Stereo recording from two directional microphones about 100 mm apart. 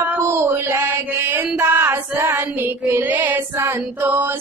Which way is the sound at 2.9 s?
15° right (ahead or behind).